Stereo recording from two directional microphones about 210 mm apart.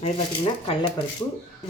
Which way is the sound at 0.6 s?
25° left (ahead or behind).